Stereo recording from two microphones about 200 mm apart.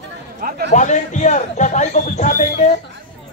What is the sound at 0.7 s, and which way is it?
Speech, 35° left (ahead or behind).